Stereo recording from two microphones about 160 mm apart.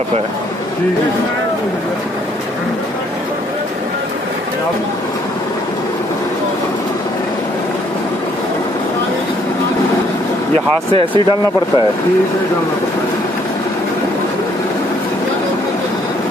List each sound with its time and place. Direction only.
10.9 s speech: 35° right (ahead or behind)